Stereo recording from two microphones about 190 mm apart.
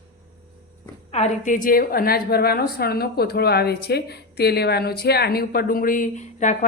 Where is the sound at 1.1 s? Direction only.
40° left (ahead or behind).